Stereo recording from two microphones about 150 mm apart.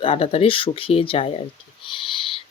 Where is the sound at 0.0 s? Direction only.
40° left (ahead or behind).